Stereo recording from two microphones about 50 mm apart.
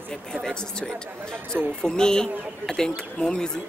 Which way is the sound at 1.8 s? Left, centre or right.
Centre.